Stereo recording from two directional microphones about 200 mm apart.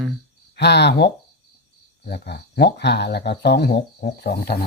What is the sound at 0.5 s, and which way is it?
Speech, 55° left (ahead or behind).